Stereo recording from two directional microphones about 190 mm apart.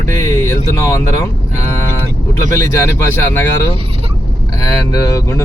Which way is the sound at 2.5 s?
15° left (ahead or behind).